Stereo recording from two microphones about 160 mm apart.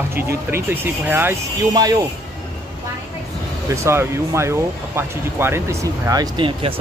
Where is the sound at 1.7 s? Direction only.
25° right (ahead or behind).